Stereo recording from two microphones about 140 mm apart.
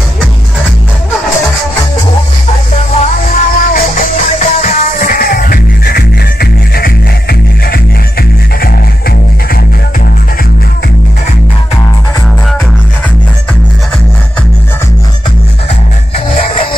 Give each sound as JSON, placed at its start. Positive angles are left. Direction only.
{"t": 3.3, "sound": "music", "side_deg": 85}